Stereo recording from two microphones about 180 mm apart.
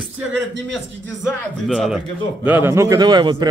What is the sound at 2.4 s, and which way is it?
A man's voice, 10° right (ahead or behind).